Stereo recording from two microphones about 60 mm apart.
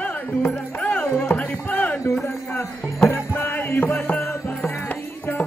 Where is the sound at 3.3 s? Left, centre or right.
Left.